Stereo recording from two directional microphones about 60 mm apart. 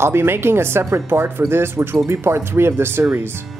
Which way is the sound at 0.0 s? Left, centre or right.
Right.